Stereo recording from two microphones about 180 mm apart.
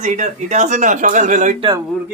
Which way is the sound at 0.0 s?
40° right (ahead or behind).